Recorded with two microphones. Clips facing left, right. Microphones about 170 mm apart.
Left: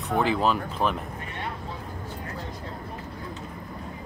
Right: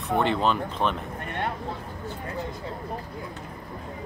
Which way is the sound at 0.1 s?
Centre (ahead or behind).